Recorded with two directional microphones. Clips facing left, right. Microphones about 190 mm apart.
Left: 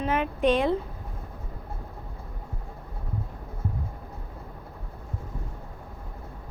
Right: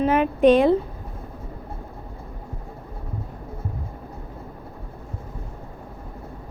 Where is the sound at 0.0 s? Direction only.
50° right (ahead or behind).